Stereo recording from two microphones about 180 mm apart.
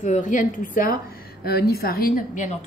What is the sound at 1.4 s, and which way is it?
A woman's voice, 60° left (ahead or behind).